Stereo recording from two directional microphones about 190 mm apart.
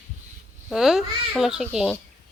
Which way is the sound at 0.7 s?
Centre (ahead or behind).